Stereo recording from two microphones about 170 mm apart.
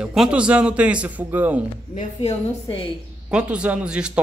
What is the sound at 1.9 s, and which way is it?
Speech, 30° left (ahead or behind).